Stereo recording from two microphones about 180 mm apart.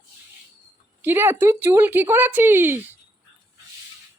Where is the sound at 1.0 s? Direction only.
10° right (ahead or behind).